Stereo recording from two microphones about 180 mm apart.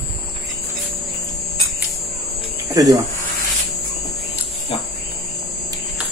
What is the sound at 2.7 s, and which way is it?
Speech, 20° right (ahead or behind).